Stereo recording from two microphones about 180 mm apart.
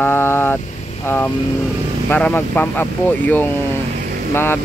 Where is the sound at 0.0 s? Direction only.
10° left (ahead or behind).